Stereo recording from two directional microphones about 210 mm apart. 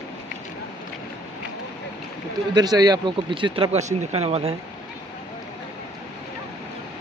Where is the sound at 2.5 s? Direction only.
20° right (ahead or behind).